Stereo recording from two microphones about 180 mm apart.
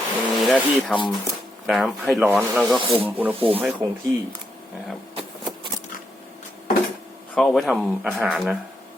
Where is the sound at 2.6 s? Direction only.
30° right (ahead or behind).